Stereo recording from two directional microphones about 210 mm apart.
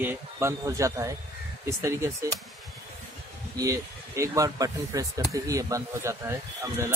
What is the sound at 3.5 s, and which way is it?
Speech, 15° right (ahead or behind).